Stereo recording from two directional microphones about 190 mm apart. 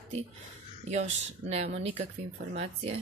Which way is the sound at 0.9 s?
35° right (ahead or behind).